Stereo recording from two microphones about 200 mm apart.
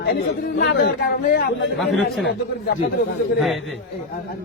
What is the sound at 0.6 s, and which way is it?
Speech, 60° left (ahead or behind).